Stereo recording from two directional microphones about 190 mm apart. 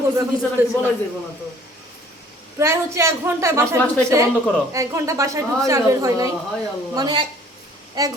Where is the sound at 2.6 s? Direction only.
15° right (ahead or behind).